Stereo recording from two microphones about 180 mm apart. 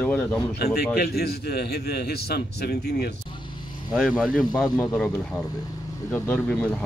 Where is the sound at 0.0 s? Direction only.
10° left (ahead or behind).